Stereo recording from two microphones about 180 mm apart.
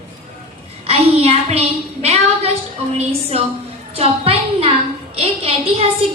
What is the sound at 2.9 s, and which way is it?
A woman's voice, 35° right (ahead or behind).